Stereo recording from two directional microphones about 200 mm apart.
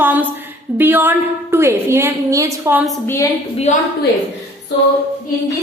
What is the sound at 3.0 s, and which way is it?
Speech, 15° left (ahead or behind).